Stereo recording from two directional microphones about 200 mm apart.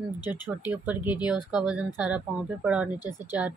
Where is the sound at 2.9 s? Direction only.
20° left (ahead or behind).